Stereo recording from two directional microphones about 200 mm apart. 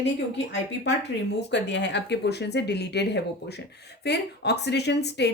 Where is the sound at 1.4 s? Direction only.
60° left (ahead or behind).